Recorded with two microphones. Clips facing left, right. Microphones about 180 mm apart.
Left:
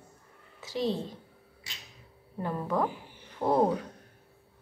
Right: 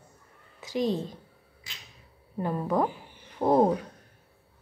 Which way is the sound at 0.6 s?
15° right (ahead or behind).